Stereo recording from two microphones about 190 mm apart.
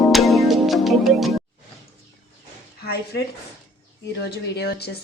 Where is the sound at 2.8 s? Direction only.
55° left (ahead or behind).